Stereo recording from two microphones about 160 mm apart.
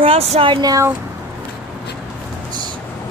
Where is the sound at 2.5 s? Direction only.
25° right (ahead or behind).